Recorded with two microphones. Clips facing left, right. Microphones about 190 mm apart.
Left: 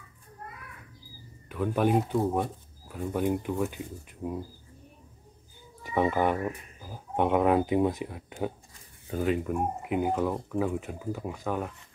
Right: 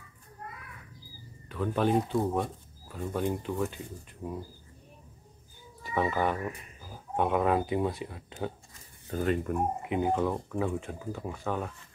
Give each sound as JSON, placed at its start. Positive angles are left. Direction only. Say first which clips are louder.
{"t": 1.5, "sound": "speech", "louder": "left 2 dB", "side_deg": 10}
{"t": 5.9, "sound": "speech", "louder": "left 3 dB", "side_deg": 15}